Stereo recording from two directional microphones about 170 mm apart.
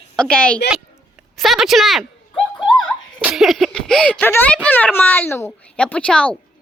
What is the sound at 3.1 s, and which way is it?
Speech, 5° right (ahead or behind).